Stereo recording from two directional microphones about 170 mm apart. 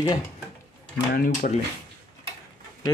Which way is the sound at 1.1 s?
55° left (ahead or behind).